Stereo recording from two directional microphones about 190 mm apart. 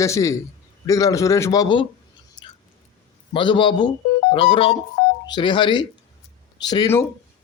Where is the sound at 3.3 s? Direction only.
25° left (ahead or behind).